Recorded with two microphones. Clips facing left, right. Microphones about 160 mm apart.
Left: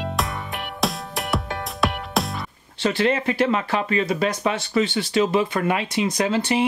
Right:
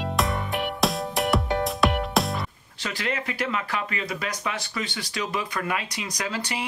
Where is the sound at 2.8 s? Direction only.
30° left (ahead or behind).